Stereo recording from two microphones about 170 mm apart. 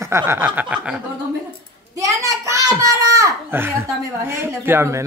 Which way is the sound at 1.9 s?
20° right (ahead or behind).